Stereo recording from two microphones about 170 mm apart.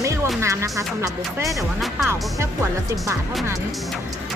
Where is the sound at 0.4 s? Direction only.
15° right (ahead or behind).